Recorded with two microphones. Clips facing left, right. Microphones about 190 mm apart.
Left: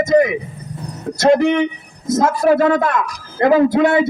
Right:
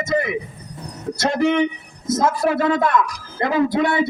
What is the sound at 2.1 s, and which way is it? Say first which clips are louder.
Speech: left 5 dB; 45° left (ahead or behind).